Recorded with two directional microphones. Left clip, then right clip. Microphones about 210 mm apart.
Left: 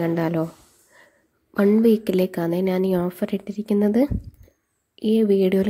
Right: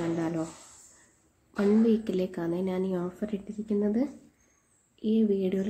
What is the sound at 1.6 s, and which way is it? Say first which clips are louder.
A woman's voice: left 8 dB; 40° left (ahead or behind).